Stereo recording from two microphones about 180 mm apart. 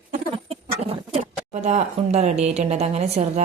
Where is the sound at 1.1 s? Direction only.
40° right (ahead or behind).